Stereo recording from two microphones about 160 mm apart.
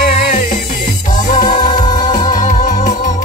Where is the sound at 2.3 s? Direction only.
55° left (ahead or behind).